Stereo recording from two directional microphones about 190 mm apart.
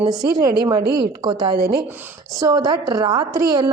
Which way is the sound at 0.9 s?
55° right (ahead or behind).